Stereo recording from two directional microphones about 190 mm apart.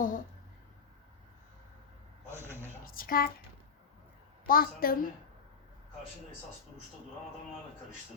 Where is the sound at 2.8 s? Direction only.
50° left (ahead or behind).